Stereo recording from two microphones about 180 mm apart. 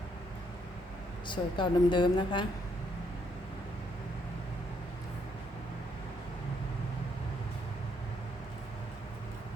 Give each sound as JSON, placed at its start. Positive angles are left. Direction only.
{"t": 1.3, "sound": "a woman's voice", "side_deg": 25}